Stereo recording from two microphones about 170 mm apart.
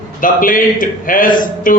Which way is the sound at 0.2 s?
55° left (ahead or behind).